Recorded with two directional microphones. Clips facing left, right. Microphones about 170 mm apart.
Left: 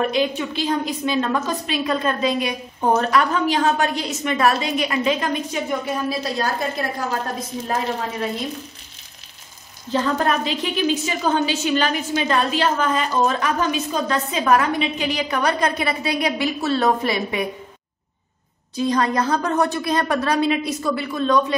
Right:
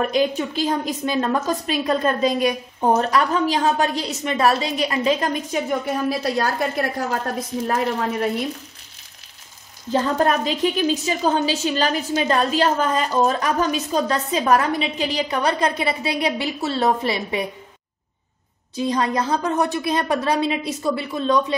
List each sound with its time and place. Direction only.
0.1 s a woman's voice: 40° right (ahead or behind)
6.0 s a woman's voice: 60° right (ahead or behind)
9.9 s a woman's voice: 40° right (ahead or behind)
18.8 s a woman's voice: 20° right (ahead or behind)